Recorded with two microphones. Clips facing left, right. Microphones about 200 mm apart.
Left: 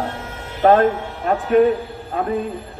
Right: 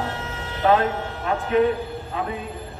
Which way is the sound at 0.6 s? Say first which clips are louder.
Left 6 dB; 45° left (ahead or behind).